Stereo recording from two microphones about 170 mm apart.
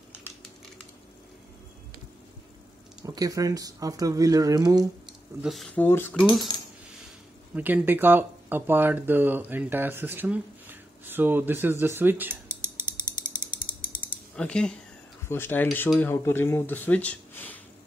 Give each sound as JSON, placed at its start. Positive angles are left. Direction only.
{"t": 3.1, "sound": "speech", "side_deg": -20}
{"t": 5.0, "sound": "speech", "side_deg": 0}
{"t": 7.5, "sound": "speech", "side_deg": -10}
{"t": 13.1, "sound": "mechanisms", "side_deg": 50}
{"t": 14.3, "sound": "speech", "side_deg": 5}